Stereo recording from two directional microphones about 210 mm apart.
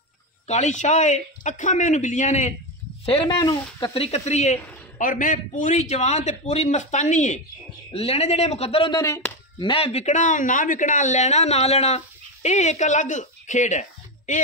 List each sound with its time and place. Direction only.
0.5 s speech: 35° left (ahead or behind)
3.3 s speech: 15° left (ahead or behind); by 14.4 s 35° left (ahead or behind)